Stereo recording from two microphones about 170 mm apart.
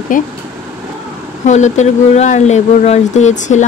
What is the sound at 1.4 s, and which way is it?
Speech, 45° left (ahead or behind).